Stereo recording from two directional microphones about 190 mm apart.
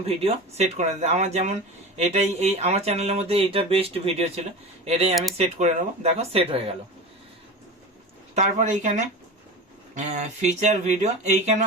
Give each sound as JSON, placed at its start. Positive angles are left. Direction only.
{"t": 0.0, "sound": "speech", "side_deg": -30}
{"t": 8.4, "sound": "speech", "side_deg": -40}